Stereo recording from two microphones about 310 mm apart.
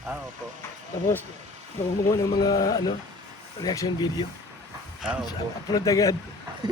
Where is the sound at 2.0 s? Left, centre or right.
Centre.